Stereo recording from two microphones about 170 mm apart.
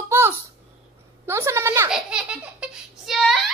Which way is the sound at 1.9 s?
5° right (ahead or behind).